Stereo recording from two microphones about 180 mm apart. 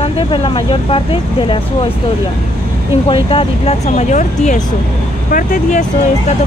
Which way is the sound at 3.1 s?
30° left (ahead or behind).